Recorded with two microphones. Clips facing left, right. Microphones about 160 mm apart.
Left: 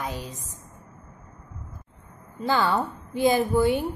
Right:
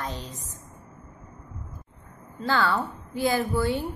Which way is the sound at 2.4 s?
20° left (ahead or behind).